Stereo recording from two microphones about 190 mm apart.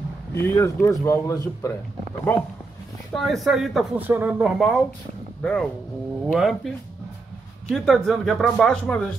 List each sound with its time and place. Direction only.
0.3 s speech: 15° left (ahead or behind)
3.1 s speech: centre (ahead or behind)
7.7 s speech: centre (ahead or behind)